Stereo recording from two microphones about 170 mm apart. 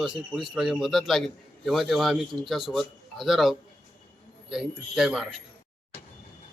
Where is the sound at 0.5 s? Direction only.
Centre (ahead or behind).